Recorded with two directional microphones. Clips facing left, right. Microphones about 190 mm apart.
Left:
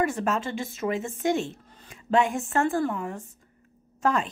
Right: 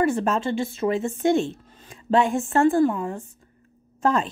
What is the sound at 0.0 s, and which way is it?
Speech, 30° right (ahead or behind).